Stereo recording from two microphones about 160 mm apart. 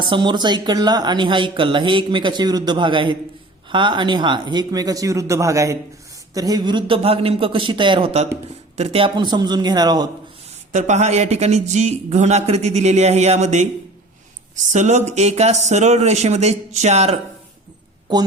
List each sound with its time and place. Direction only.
0.0 s a man's voice: 30° right (ahead or behind)
10.7 s speech: 45° right (ahead or behind)